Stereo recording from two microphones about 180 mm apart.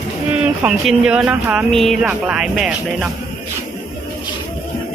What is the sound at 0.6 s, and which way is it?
Speech, 5° right (ahead or behind).